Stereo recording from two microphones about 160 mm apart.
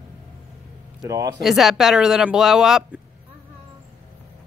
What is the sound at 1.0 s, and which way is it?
Speech, 20° right (ahead or behind).